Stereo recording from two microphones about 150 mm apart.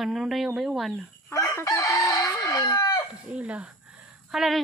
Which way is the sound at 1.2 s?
20° left (ahead or behind).